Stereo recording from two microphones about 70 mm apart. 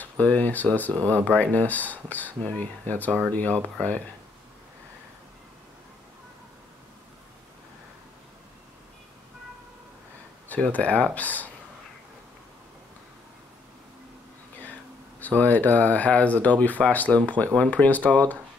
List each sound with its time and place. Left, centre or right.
0.0 s speech: left
10.5 s speech: left
15.1 s speech: left